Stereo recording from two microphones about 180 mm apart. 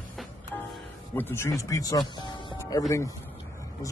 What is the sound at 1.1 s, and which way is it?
Speech, 15° left (ahead or behind).